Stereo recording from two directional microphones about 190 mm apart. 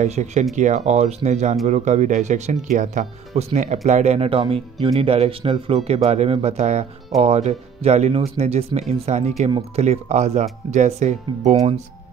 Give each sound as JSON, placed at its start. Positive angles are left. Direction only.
{"t": 0.0, "sound": "speech", "side_deg": -35}